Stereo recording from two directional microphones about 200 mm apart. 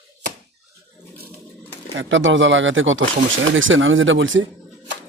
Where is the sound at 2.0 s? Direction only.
70° right (ahead or behind).